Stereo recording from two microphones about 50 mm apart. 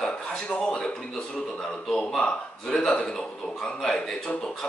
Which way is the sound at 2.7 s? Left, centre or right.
Centre.